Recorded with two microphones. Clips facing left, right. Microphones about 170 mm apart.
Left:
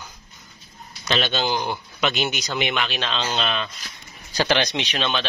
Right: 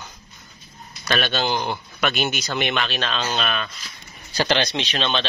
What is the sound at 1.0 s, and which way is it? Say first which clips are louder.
Speech: even; 20° left (ahead or behind).